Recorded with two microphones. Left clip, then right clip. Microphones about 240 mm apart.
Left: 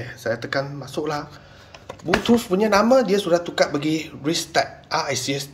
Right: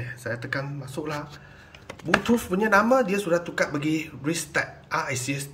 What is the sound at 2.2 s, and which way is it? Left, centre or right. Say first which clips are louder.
Speech: left 5 dB; centre.